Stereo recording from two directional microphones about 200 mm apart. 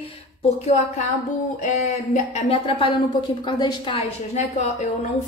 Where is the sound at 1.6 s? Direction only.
30° left (ahead or behind).